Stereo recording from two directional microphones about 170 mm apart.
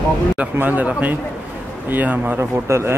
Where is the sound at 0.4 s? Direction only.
10° right (ahead or behind).